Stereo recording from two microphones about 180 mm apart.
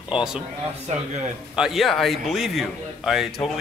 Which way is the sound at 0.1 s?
5° right (ahead or behind).